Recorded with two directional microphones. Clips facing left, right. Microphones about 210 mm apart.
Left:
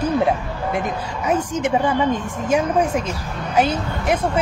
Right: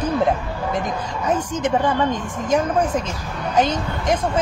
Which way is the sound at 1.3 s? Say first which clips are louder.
Left 1 dB; 10° left (ahead or behind).